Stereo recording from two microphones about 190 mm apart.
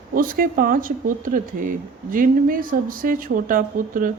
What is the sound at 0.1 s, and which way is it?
Speech, 50° right (ahead or behind).